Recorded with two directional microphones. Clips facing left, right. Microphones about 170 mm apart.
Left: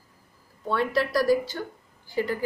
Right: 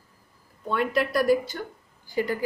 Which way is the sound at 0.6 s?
15° right (ahead or behind).